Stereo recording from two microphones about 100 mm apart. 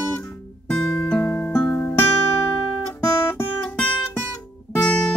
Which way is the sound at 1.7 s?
25° left (ahead or behind).